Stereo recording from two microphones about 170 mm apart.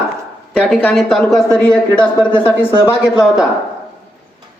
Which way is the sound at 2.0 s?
30° left (ahead or behind).